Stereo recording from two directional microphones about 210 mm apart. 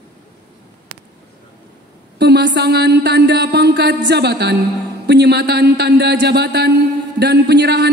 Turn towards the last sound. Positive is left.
turn(degrees=-50)  # may be behind; listen again after turning